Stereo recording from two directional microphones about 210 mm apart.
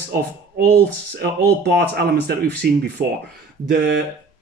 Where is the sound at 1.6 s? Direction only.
50° right (ahead or behind).